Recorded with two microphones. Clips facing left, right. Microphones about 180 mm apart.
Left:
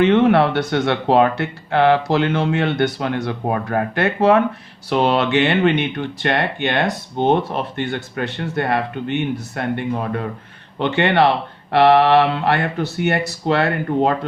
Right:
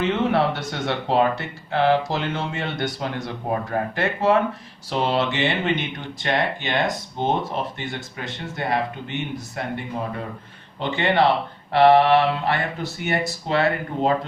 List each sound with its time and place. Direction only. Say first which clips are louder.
0.0 s speech: left 7 dB; 65° left (ahead or behind)